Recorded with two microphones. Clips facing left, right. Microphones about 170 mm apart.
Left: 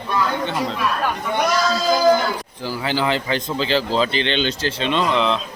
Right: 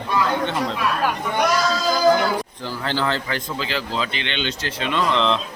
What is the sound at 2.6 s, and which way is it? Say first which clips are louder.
A man's voice: left 4 dB; 10° left (ahead or behind).